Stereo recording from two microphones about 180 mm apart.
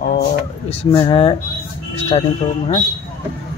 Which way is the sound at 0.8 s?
25° left (ahead or behind).